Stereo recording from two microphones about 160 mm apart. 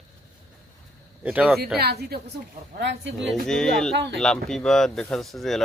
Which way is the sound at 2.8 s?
90° right.